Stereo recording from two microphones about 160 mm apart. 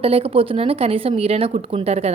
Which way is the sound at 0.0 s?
35° right (ahead or behind).